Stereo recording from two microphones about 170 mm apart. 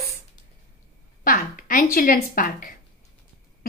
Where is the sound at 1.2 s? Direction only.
55° left (ahead or behind).